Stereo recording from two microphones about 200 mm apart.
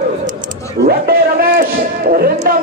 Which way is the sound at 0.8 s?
50° right (ahead or behind).